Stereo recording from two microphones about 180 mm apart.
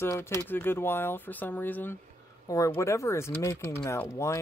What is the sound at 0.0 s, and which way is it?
Speech, 15° left (ahead or behind).